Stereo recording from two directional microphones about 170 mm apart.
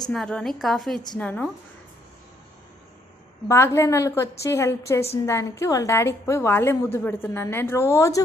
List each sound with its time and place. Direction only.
0.1 s a woman's voice: 5° left (ahead or behind)
3.5 s a woman's voice: 15° left (ahead or behind)